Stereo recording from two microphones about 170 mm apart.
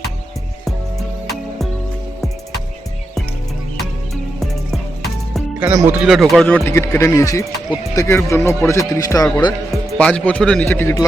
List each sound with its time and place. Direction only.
5.5 s speech: 15° right (ahead or behind)
6.1 s speech: centre (ahead or behind)
6.7 s speech: 15° left (ahead or behind)
10.0 s speech: 5° left (ahead or behind)